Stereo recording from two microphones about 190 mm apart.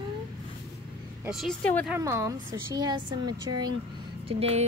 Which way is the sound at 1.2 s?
Centre (ahead or behind).